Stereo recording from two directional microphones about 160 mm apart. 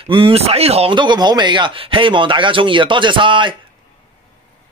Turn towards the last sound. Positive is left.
turn(degrees=-30)  # may be behind; listen again after turning